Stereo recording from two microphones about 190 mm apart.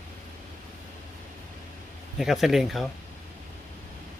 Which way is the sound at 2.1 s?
Centre (ahead or behind).